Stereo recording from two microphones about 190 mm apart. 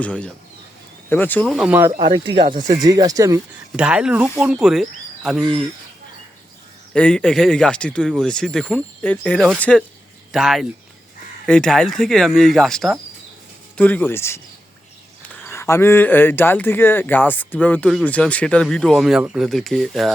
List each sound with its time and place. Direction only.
0.0 s speech: 5° left (ahead or behind)
1.5 s speech: 10° right (ahead or behind)
2.0 s speech: 25° right (ahead or behind)
3.8 s speech: 5° right (ahead or behind)
6.9 s speech: 5° left (ahead or behind)
15.4 s speech: 15° left (ahead or behind)